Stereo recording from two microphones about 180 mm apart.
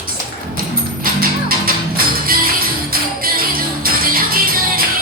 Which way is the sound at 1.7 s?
55° right (ahead or behind).